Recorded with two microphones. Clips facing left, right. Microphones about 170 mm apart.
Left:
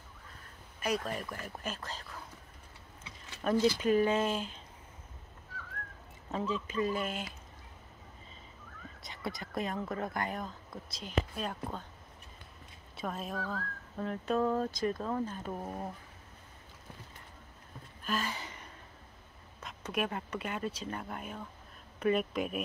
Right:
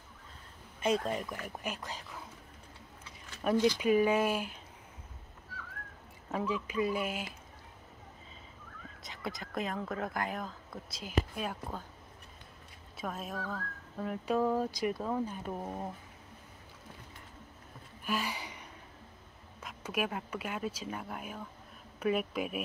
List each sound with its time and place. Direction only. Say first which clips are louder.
0.7 s speech: right 3 dB; 25° right (ahead or behind)
3.7 s speech: right 1 dB; 10° right (ahead or behind)
6.3 s speech: right 1 dB; 10° right (ahead or behind)
9.0 s speech: left 1 dB; centre (ahead or behind)
12.9 s speech: left 1 dB; centre (ahead or behind)
18.0 s a sound: even; 10° right (ahead or behind)
19.6 s speech: even; 5° right (ahead or behind)